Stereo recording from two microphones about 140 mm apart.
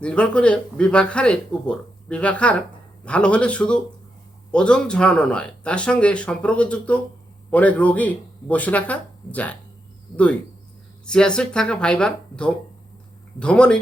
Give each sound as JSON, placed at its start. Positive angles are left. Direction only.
{"t": 0.0, "sound": "speech", "side_deg": 10}
{"t": 10.1, "sound": "speech", "side_deg": 30}
{"t": 11.0, "sound": "speech", "side_deg": 5}